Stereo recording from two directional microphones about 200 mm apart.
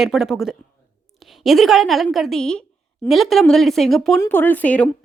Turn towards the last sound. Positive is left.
turn(degrees=5)  # may be behind; listen again after turning